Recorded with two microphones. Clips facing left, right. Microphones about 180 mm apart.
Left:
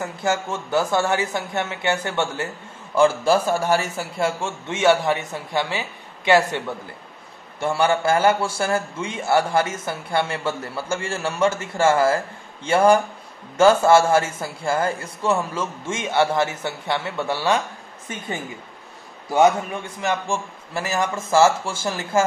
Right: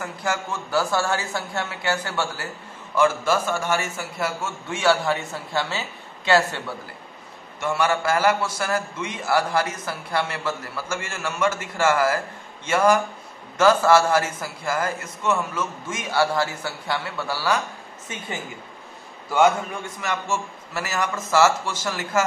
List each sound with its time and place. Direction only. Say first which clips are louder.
0.0 s a man's voice: left 4 dB; 25° left (ahead or behind)
7.6 s a man's voice: left 3 dB; 30° left (ahead or behind)
20.0 s a man's voice: left 3 dB; 30° left (ahead or behind)